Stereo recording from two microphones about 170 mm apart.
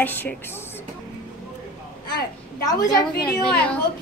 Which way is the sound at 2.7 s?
20° left (ahead or behind).